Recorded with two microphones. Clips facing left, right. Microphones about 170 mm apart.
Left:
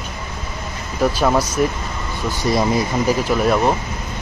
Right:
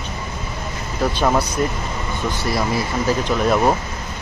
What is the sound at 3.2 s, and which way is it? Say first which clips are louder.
Speech: right 1 dB; centre (ahead or behind).